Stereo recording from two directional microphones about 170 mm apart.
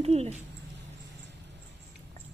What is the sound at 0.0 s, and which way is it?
Speech, 35° right (ahead or behind).